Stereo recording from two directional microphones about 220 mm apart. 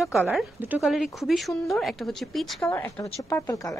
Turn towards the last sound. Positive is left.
turn(degrees=15)  # may be behind; listen again after turning